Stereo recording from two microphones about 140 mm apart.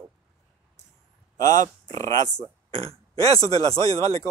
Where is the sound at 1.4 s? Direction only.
25° left (ahead or behind).